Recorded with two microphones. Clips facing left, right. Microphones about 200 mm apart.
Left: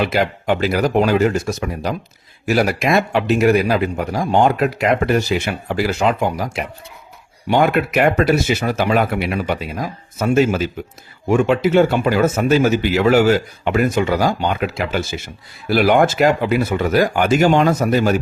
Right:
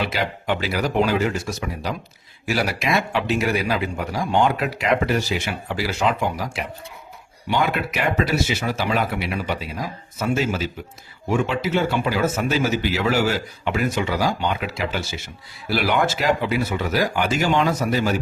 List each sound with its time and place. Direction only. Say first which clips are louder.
0.0 s speech: left 6 dB; 50° left (ahead or behind)